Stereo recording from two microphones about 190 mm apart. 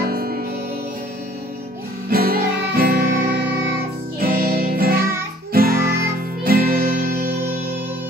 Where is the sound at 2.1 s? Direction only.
50° right (ahead or behind).